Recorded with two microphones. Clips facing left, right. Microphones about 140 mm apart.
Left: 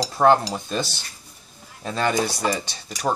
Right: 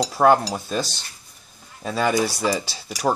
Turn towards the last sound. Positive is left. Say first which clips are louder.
# right 2 dB
turn(degrees=-5)  # may be behind; listen again after turning